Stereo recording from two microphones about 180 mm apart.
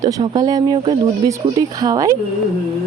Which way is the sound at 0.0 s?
20° right (ahead or behind).